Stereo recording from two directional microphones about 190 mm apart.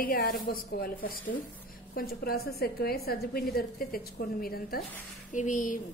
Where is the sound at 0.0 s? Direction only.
50° left (ahead or behind).